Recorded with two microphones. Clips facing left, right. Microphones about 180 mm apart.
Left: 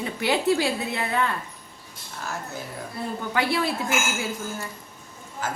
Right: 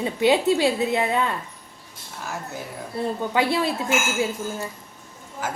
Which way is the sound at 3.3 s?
20° right (ahead or behind).